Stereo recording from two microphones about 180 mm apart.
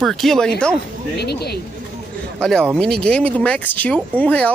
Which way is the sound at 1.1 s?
65° left (ahead or behind).